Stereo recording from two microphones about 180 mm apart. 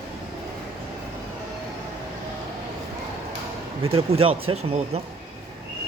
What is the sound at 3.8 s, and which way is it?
Speech, 30° right (ahead or behind).